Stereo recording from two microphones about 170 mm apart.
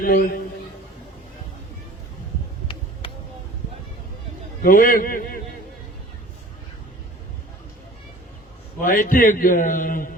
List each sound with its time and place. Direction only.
0.0 s a man's voice: 60° left (ahead or behind)
3.0 s a sound: 35° left (ahead or behind)
4.6 s a man's voice: 55° left (ahead or behind)
8.8 s a man's voice: 55° left (ahead or behind)